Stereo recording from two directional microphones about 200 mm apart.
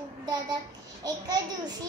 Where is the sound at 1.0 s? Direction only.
20° right (ahead or behind).